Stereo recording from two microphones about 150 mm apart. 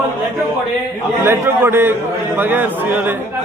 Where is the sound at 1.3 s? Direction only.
15° right (ahead or behind).